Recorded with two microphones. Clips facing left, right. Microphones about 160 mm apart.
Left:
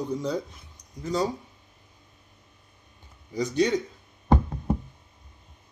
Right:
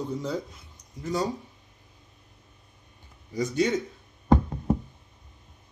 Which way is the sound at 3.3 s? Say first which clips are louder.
Left 1 dB; 20° left (ahead or behind).